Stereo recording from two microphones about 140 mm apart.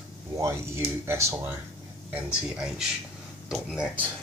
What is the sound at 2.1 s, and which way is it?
Speech, 5° right (ahead or behind).